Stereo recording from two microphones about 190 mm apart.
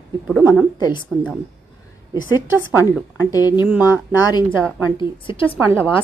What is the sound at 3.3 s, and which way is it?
Speech, 20° left (ahead or behind).